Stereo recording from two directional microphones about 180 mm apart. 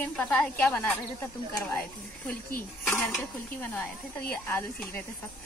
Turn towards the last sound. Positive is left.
turn(degrees=15)  # may be behind; listen again after turning